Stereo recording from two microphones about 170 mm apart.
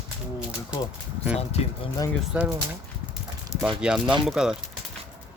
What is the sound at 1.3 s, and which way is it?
Speech, 40° left (ahead or behind).